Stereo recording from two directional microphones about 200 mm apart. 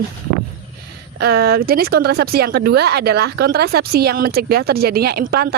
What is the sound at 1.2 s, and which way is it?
Speech, 50° right (ahead or behind).